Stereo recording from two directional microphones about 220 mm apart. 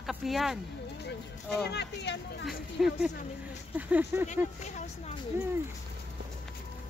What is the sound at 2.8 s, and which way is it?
Speech, centre (ahead or behind).